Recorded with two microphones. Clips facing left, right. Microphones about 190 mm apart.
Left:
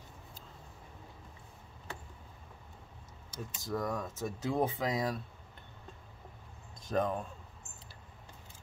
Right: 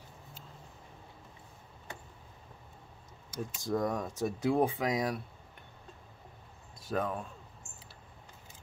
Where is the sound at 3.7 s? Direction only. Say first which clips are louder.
Right 3 dB; 20° right (ahead or behind).